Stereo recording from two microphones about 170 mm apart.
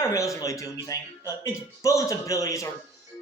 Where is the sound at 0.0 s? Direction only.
20° left (ahead or behind).